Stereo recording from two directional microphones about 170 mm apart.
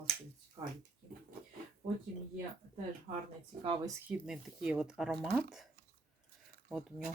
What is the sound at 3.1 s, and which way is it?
Speech, 40° right (ahead or behind).